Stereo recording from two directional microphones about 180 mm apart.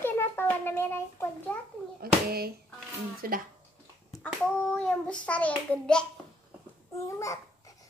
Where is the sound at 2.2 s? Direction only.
60° right (ahead or behind).